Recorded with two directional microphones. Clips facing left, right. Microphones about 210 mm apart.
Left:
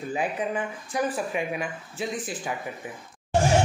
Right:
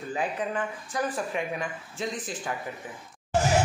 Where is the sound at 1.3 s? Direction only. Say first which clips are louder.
Left 2 dB; 10° left (ahead or behind).